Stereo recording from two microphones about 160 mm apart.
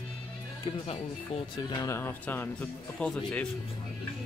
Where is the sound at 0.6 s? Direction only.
35° left (ahead or behind).